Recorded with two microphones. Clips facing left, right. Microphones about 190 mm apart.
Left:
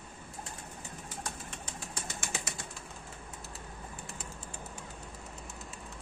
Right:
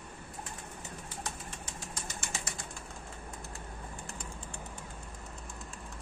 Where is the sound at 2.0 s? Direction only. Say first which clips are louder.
Left 2 dB; 60° left (ahead or behind).